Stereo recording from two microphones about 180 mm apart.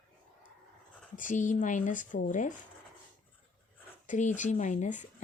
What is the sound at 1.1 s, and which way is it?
Speech, 45° left (ahead or behind).